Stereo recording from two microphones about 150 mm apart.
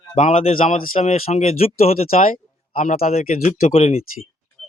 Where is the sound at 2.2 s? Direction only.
65° left (ahead or behind).